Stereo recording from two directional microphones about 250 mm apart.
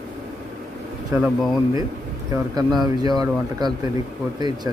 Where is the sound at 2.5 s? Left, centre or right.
Centre.